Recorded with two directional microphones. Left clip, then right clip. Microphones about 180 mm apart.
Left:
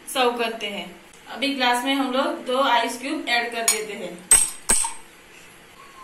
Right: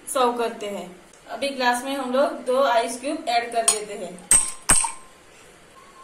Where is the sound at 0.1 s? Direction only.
55° right (ahead or behind).